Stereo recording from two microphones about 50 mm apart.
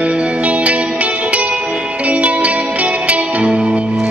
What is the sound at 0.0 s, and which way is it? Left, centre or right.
Music, right.